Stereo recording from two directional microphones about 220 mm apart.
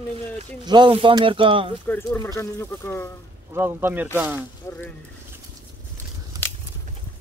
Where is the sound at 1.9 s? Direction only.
10° left (ahead or behind).